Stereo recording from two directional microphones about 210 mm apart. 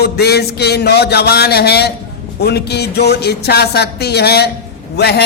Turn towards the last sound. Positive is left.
turn(degrees=50)  # may be behind; listen again after turning